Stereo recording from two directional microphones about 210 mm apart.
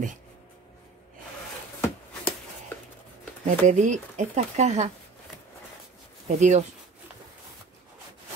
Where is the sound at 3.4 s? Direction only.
35° right (ahead or behind).